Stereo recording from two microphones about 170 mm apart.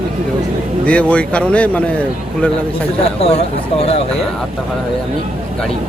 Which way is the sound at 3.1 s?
35° left (ahead or behind).